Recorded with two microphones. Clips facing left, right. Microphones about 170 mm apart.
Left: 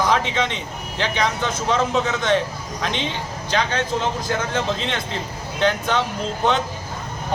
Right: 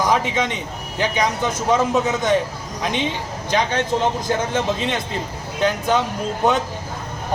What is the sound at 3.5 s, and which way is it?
Speech, 20° right (ahead or behind).